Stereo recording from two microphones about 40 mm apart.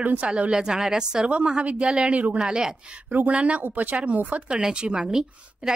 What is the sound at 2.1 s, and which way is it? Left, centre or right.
Speech, right.